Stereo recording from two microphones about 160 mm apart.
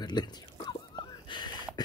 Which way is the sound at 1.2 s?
30° left (ahead or behind).